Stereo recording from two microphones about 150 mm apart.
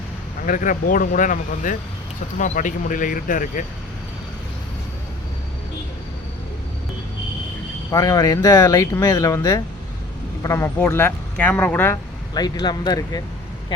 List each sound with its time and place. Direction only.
0.4 s speech: 60° left (ahead or behind)
7.9 s speech: 25° left (ahead or behind)
12.3 s speech: 25° left (ahead or behind)